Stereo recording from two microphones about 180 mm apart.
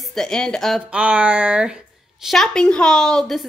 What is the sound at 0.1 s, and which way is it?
Speech, 5° left (ahead or behind).